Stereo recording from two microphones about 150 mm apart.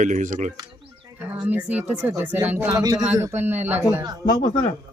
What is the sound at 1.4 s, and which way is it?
Speech, 10° right (ahead or behind).